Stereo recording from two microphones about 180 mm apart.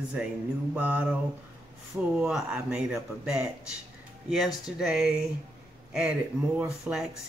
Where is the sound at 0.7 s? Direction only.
5° right (ahead or behind).